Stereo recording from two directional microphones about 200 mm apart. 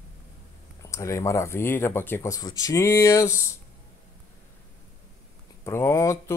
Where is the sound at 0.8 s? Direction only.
15° left (ahead or behind).